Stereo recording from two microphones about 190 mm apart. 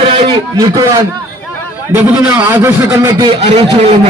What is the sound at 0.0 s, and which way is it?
A man's voice, 30° right (ahead or behind).